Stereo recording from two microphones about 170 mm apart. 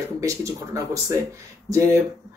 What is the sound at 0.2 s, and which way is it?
Speech, 20° right (ahead or behind).